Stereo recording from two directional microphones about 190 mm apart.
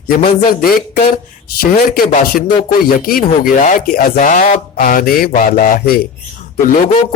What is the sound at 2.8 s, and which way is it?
Speech, 50° left (ahead or behind).